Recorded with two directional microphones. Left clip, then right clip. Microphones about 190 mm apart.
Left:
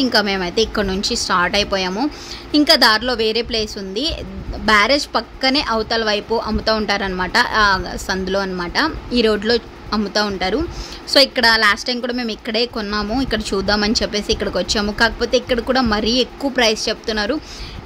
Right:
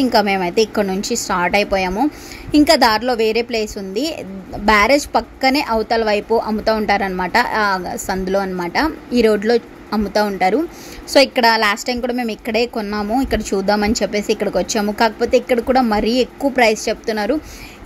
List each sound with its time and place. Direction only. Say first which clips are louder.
0.1 s a woman's voice: right 2 dB; 15° right (ahead or behind)